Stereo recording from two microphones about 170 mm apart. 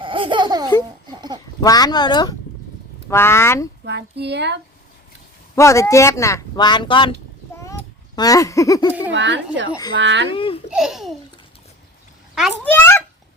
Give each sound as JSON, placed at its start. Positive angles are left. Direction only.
{"t": 0.0, "sound": "laughter", "side_deg": -30}
{"t": 1.6, "sound": "speech", "side_deg": 25}
{"t": 3.1, "sound": "speech", "side_deg": 15}
{"t": 3.8, "sound": "speech", "side_deg": -85}
{"t": 5.5, "sound": "speech", "side_deg": 15}
{"t": 7.5, "sound": "a sound", "side_deg": 20}
{"t": 9.1, "sound": "speech", "side_deg": -90}
{"t": 10.2, "sound": "speech", "side_deg": 30}
{"t": 10.7, "sound": "a child's voice", "side_deg": -5}
{"t": 12.3, "sound": "a child's voice", "side_deg": -5}
{"t": 12.6, "sound": "speech", "side_deg": 10}